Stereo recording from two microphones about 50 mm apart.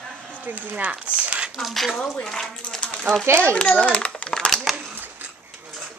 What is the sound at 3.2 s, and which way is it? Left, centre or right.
Speech, right.